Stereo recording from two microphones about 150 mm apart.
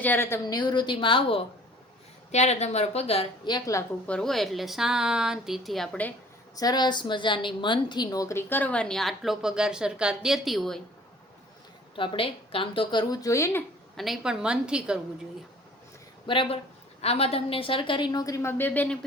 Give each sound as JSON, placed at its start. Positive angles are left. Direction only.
{"t": 0.0, "sound": "a woman's voice", "side_deg": 15}
{"t": 0.4, "sound": "a woman's voice", "side_deg": 30}
{"t": 2.3, "sound": "speech", "side_deg": 45}
{"t": 3.4, "sound": "a woman's voice", "side_deg": 25}
{"t": 4.0, "sound": "a woman's voice", "side_deg": 5}
{"t": 6.6, "sound": "a woman's voice", "side_deg": 25}
{"t": 11.9, "sound": "a woman's voice", "side_deg": 35}
{"t": 13.9, "sound": "a woman's voice", "side_deg": 0}
{"t": 16.2, "sound": "a woman's voice", "side_deg": 35}